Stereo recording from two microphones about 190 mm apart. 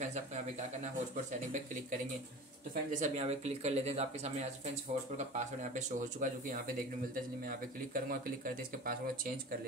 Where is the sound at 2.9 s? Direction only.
35° right (ahead or behind).